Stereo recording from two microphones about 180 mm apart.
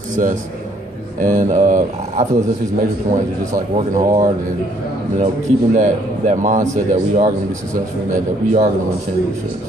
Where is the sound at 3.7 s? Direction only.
45° right (ahead or behind).